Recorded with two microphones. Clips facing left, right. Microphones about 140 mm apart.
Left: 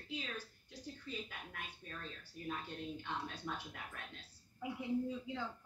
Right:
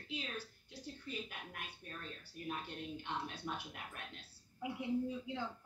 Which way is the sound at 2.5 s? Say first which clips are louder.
Even; 15° right (ahead or behind).